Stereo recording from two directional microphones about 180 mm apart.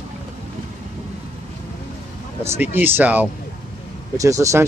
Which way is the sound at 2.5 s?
10° right (ahead or behind).